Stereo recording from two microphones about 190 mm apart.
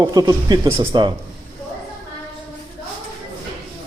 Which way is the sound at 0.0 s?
20° right (ahead or behind).